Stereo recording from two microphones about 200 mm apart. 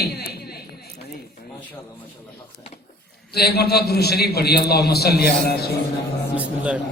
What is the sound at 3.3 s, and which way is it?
A man's voice, 55° left (ahead or behind).